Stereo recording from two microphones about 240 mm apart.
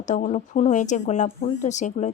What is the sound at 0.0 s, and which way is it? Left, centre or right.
A woman's voice, left.